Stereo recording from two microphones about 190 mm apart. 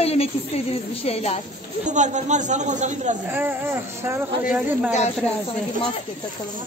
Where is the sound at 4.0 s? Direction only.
10° right (ahead or behind).